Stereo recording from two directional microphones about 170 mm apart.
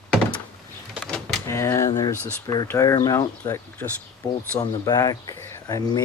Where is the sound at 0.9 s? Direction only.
Centre (ahead or behind).